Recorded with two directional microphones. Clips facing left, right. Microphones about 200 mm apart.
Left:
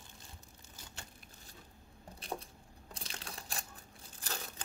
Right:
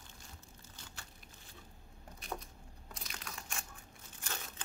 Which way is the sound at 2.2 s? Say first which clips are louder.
Left 2 dB; 30° left (ahead or behind).